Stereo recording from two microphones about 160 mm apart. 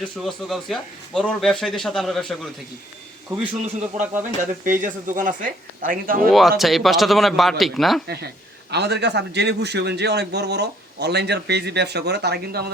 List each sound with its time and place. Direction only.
0.4 s speech: centre (ahead or behind)
3.2 s speech: 10° right (ahead or behind)
4.6 s speech: 55° right (ahead or behind)
6.2 s speech: centre (ahead or behind)
8.0 s a man's voice: 90° right